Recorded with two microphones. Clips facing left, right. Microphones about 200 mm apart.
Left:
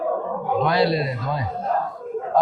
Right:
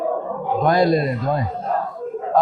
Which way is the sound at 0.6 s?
45° right (ahead or behind).